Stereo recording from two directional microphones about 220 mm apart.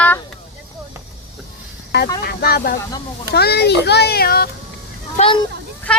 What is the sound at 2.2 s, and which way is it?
A child's voice, 45° left (ahead or behind).